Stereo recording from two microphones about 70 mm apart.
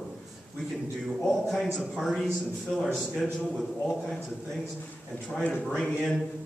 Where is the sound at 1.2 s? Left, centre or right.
Centre.